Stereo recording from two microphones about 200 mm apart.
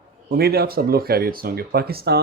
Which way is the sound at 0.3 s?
50° right (ahead or behind).